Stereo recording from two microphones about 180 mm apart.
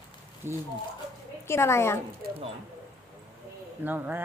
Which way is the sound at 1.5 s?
15° left (ahead or behind).